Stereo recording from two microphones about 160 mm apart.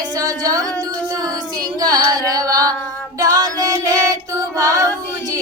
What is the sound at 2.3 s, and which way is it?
Music, 20° right (ahead or behind).